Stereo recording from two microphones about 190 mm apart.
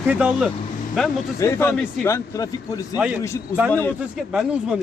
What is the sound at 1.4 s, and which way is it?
A man's voice, 15° left (ahead or behind).